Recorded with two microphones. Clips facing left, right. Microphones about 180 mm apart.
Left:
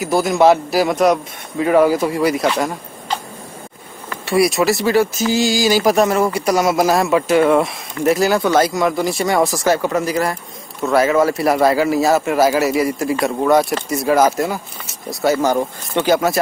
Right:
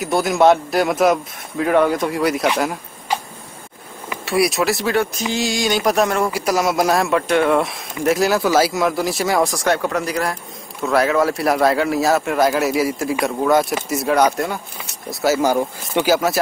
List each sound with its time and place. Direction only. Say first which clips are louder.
0.0 s speech: left 1 dB; centre (ahead or behind)
2.6 s a sound: left 1 dB; 5° right (ahead or behind)
4.3 s speech: left 3 dB; centre (ahead or behind)